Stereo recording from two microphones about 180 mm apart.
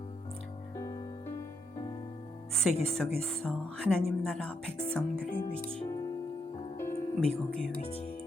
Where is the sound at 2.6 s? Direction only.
Centre (ahead or behind).